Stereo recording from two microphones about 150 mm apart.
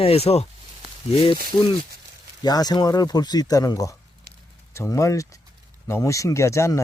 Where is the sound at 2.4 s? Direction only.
25° left (ahead or behind).